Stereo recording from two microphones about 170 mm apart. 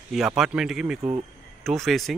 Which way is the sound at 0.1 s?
Centre (ahead or behind).